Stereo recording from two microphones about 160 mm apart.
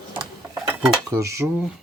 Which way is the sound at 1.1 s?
20° right (ahead or behind).